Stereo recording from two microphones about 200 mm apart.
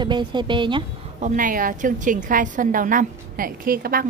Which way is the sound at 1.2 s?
40° right (ahead or behind).